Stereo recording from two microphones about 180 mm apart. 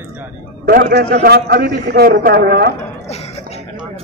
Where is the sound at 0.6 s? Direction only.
55° right (ahead or behind).